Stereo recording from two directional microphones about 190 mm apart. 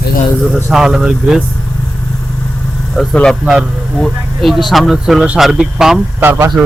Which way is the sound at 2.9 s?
5° left (ahead or behind).